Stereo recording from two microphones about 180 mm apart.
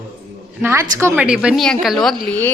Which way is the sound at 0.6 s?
15° right (ahead or behind).